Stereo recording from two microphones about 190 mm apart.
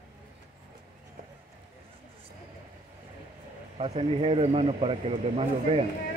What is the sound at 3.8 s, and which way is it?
Speech, 30° right (ahead or behind).